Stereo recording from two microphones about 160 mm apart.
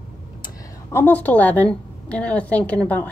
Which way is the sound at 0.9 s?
10° left (ahead or behind).